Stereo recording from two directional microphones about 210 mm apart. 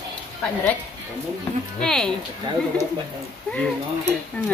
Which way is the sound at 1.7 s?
5° left (ahead or behind).